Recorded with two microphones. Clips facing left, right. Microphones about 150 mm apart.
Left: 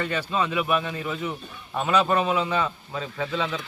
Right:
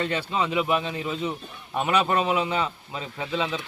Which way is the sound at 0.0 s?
20° right (ahead or behind).